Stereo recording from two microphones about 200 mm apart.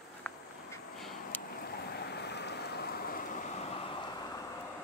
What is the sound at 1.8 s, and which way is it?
Rain, 55° left (ahead or behind).